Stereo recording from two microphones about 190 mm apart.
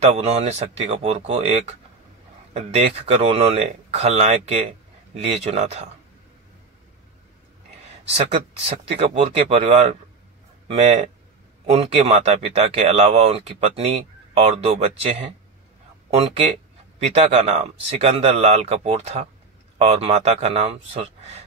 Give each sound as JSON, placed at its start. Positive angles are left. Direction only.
{"t": 0.0, "sound": "speech", "side_deg": -35}
{"t": 8.6, "sound": "speech", "side_deg": -35}